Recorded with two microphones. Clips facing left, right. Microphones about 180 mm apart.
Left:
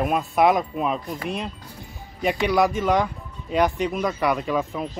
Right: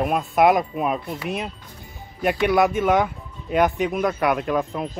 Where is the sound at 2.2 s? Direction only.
Centre (ahead or behind).